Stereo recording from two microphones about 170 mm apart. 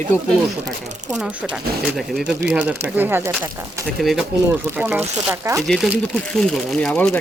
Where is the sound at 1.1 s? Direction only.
5° right (ahead or behind).